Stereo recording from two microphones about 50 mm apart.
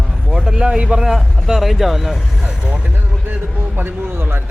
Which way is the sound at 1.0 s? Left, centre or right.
Centre.